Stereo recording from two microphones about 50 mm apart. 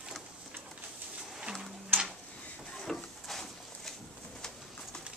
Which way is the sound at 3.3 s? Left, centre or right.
Centre.